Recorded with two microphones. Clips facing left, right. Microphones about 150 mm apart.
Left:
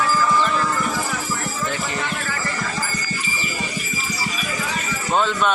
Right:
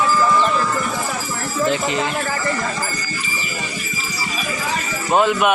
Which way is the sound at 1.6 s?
20° right (ahead or behind).